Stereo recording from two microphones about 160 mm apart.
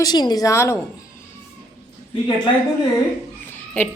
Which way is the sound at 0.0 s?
25° left (ahead or behind).